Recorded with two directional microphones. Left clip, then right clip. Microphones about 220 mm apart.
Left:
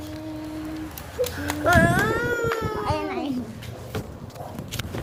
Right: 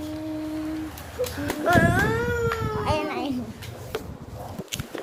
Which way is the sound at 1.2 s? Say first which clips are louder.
Left 2 dB; 45° left (ahead or behind).